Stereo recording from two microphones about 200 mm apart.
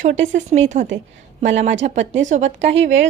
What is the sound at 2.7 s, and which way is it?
Speech, 65° right (ahead or behind).